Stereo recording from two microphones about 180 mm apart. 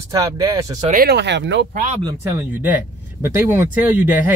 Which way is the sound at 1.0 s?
70° right (ahead or behind).